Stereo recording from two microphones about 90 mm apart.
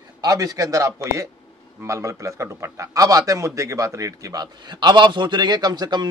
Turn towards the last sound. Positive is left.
turn(degrees=-50)  # may be behind; listen again after turning